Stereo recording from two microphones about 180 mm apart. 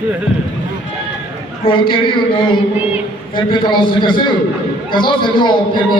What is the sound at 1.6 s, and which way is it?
A man's voice, 30° left (ahead or behind).